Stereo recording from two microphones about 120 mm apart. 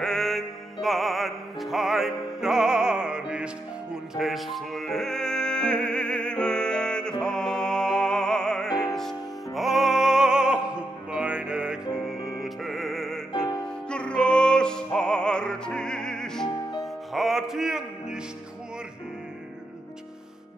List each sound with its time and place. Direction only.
0.0 s music: 5° left (ahead or behind)
13.3 s music: 35° left (ahead or behind)
13.6 s music: 10° left (ahead or behind)